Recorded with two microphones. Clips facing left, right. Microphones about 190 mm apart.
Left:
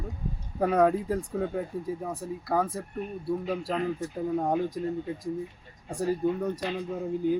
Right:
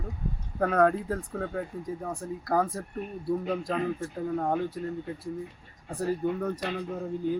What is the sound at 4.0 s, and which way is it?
Speech, 15° left (ahead or behind).